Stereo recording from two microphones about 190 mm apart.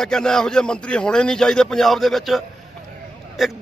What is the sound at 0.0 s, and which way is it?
A man's voice, 5° left (ahead or behind).